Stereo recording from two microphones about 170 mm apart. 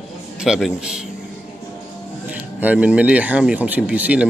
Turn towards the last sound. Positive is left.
turn(degrees=-10)  # may be behind; listen again after turning